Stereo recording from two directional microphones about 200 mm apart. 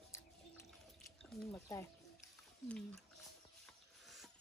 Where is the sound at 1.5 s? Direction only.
15° left (ahead or behind).